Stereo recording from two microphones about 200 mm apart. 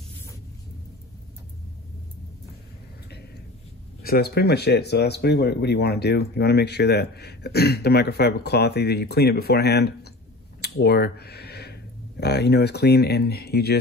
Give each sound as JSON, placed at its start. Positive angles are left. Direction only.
{"t": 4.0, "sound": "speech", "side_deg": 50}